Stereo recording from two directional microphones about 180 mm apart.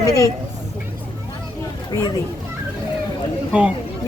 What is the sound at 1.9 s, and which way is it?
Speech, 25° left (ahead or behind).